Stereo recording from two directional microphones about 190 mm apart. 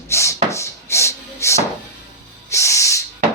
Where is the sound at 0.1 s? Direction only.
15° left (ahead or behind).